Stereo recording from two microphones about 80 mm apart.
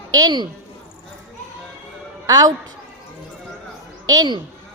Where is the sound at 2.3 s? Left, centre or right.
Right.